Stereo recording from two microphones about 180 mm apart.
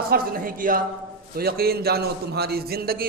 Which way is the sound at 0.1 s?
55° right (ahead or behind).